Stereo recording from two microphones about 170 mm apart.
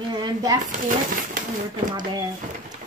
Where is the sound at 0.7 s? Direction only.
50° right (ahead or behind).